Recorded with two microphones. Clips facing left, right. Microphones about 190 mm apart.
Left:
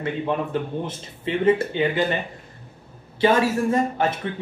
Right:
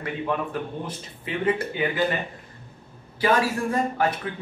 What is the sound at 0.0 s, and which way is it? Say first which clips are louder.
A man's voice: left 3 dB; 25° left (ahead or behind).